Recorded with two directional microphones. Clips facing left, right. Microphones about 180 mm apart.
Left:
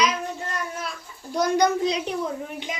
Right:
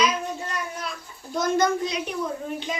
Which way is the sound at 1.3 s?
15° left (ahead or behind).